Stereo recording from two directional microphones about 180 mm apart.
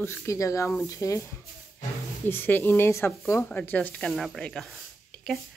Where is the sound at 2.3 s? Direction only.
10° left (ahead or behind).